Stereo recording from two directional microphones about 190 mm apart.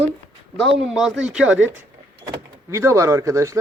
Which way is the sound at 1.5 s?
90° right.